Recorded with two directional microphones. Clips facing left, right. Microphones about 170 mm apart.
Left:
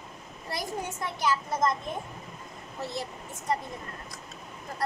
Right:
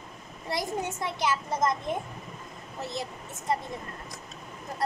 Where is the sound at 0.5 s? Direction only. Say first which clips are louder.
Right 3 dB; 20° right (ahead or behind).